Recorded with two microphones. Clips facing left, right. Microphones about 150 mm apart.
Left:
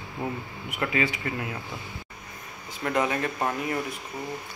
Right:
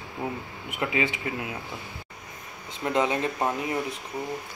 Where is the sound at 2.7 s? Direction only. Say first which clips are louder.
Right 1 dB; 25° right (ahead or behind).